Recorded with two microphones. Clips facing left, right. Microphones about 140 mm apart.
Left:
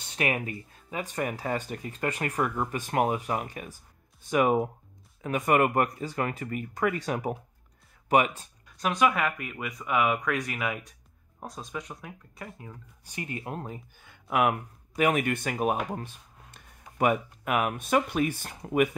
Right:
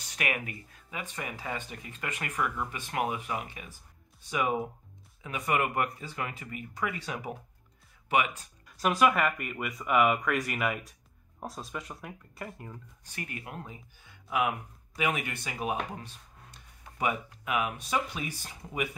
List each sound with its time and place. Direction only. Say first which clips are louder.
0.0 s speech: left 5 dB; 30° left (ahead or behind)
8.6 s speech: even; 5° right (ahead or behind)
13.0 s speech: left 5 dB; 20° left (ahead or behind)
13.7 s speech: left 7 dB; 55° left (ahead or behind)